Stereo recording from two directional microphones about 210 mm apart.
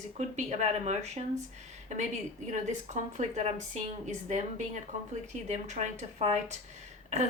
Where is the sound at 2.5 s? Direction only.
35° right (ahead or behind).